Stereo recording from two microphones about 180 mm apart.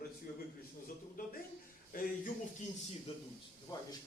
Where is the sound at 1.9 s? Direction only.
50° left (ahead or behind).